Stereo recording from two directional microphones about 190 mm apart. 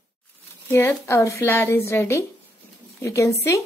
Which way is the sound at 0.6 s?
10° left (ahead or behind).